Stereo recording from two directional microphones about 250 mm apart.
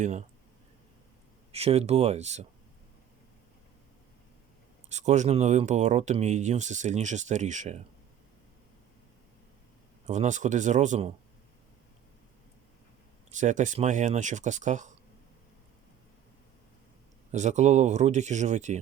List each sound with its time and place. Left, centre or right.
0.0 s speech: right
1.5 s speech: right
4.9 s speech: right
10.1 s speech: right
13.3 s speech: right
17.3 s speech: right